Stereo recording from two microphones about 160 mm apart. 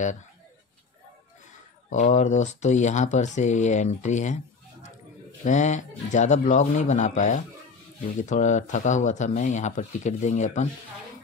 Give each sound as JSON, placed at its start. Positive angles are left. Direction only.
{"t": 1.9, "sound": "speech", "side_deg": 50}
{"t": 5.4, "sound": "speech", "side_deg": 50}